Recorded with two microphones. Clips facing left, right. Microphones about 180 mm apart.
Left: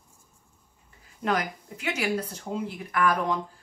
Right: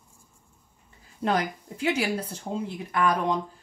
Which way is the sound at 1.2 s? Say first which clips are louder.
Right 2 dB; 30° right (ahead or behind).